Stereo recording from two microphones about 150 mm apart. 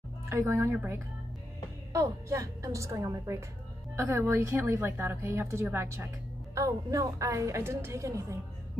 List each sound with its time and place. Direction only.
0.3 s a woman's voice: 15° right (ahead or behind)